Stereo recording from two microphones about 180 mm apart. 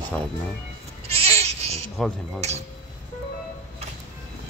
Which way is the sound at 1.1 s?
35° right (ahead or behind).